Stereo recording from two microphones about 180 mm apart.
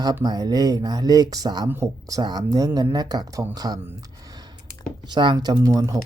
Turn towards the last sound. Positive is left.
turn(degrees=-20)  # may be behind; listen again after turning